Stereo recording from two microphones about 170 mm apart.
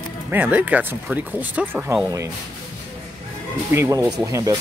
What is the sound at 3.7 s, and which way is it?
Speech, 15° right (ahead or behind).